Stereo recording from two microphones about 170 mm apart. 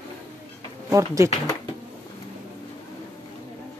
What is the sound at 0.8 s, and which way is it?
Speech, 15° right (ahead or behind).